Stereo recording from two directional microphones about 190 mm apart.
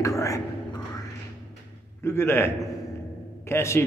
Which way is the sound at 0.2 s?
15° left (ahead or behind).